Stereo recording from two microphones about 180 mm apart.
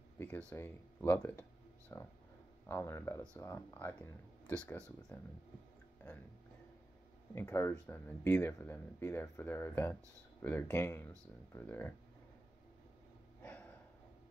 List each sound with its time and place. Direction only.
0.5 s speech: 10° left (ahead or behind)
7.3 s speech: 15° left (ahead or behind)
13.4 s a sound: 10° left (ahead or behind)